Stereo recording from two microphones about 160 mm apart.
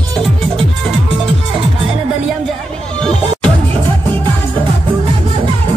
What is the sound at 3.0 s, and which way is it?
Music, 5° left (ahead or behind).